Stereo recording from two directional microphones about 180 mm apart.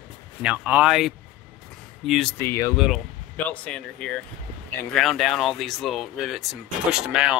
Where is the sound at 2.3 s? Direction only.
15° left (ahead or behind).